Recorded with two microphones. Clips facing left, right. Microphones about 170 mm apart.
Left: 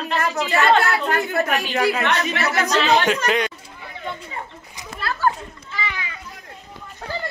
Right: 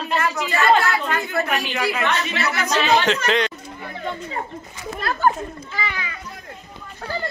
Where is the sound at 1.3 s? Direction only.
40° left (ahead or behind).